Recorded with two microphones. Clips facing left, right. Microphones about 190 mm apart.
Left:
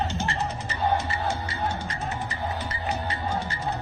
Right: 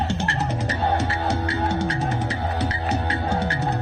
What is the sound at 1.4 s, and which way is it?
Music, 90° right.